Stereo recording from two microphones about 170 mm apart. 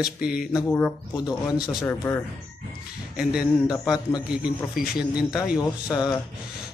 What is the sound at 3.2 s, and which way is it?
A man's voice, 5° right (ahead or behind).